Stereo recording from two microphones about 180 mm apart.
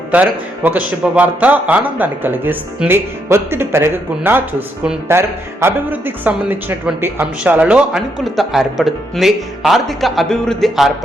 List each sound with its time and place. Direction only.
0.1 s a man's voice: 10° right (ahead or behind)